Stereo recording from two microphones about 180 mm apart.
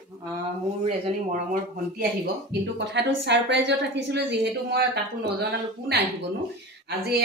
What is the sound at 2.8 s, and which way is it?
A woman's voice, 75° right (ahead or behind).